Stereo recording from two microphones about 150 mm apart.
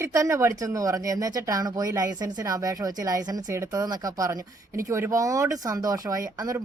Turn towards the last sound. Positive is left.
turn(degrees=-25)  # may be behind; listen again after turning